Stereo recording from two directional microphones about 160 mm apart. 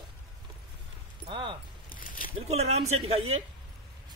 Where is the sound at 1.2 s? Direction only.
30° right (ahead or behind).